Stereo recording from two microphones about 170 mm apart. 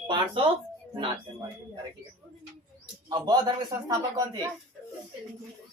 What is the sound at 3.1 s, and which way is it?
A man's voice, 25° right (ahead or behind).